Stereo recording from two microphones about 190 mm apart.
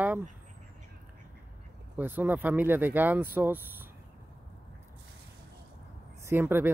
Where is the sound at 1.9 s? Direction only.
10° right (ahead or behind).